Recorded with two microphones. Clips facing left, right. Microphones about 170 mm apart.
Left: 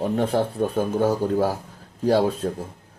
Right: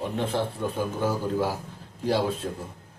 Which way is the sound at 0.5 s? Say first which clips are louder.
Left 6 dB; 65° left (ahead or behind).